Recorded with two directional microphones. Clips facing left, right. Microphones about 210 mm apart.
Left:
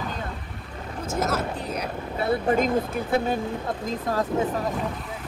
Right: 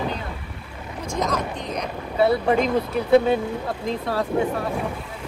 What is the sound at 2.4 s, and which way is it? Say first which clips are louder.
Speech: right 2 dB; 50° left (ahead or behind).